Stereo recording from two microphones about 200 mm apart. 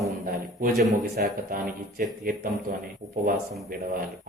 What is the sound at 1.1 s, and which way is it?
A man's voice, 50° right (ahead or behind).